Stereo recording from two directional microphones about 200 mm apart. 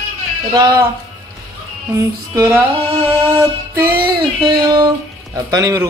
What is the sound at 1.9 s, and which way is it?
Speech, 15° right (ahead or behind).